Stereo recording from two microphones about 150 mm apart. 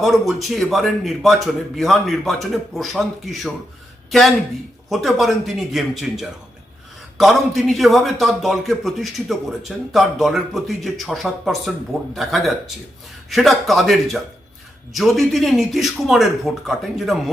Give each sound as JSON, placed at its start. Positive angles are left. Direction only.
{"t": 0.0, "sound": "a man's voice", "side_deg": 0}